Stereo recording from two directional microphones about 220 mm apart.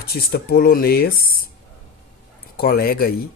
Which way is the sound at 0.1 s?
45° left (ahead or behind).